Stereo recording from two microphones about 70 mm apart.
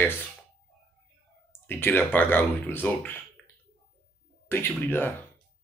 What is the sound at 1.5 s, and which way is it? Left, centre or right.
Speech, left.